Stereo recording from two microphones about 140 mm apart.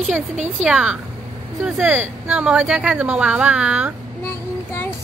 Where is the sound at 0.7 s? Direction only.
5° right (ahead or behind).